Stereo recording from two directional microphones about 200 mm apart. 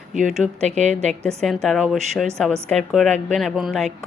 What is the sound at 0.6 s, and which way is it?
Speech, 35° right (ahead or behind).